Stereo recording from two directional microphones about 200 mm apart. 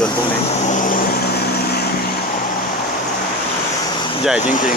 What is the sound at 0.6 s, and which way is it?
Vehicle, 40° left (ahead or behind).